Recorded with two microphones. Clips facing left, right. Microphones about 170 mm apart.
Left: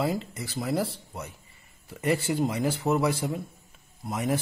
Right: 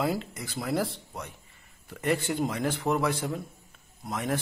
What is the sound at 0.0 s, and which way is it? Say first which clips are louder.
A man's voice: left 1 dB; centre (ahead or behind).